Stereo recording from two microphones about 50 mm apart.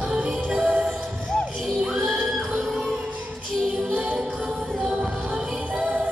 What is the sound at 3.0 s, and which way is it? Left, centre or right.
Music, right.